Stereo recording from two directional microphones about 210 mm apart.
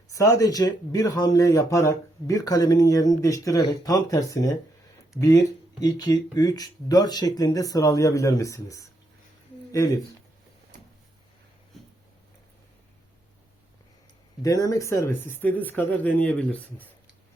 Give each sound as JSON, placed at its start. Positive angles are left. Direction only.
{"t": 0.1, "sound": "speech", "side_deg": 15}
{"t": 5.8, "sound": "speech", "side_deg": 20}
{"t": 14.4, "sound": "speech", "side_deg": 15}